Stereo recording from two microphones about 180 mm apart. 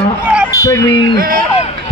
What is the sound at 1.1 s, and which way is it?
Speech, 55° right (ahead or behind).